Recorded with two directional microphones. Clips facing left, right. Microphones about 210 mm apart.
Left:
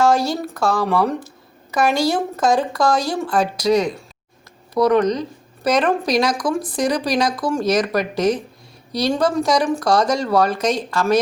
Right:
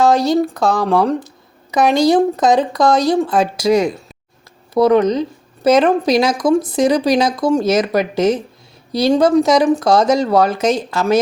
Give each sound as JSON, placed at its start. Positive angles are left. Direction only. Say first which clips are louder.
{"t": 0.0, "sound": "speech", "louder": "right 4 dB", "side_deg": -20}
{"t": 4.7, "sound": "speech", "louder": "right 4 dB", "side_deg": -25}